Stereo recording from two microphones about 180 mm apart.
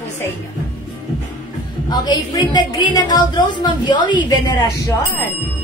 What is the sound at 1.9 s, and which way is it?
A woman's voice, 25° left (ahead or behind).